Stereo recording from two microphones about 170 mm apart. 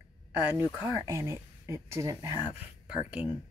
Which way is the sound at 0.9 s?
15° right (ahead or behind).